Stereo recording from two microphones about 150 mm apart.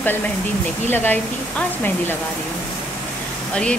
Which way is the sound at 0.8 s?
15° left (ahead or behind).